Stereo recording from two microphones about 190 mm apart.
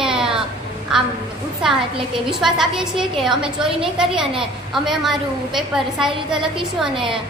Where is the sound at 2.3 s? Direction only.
Centre (ahead or behind).